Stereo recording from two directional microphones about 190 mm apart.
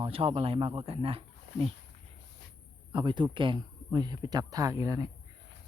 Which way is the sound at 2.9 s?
25° right (ahead or behind).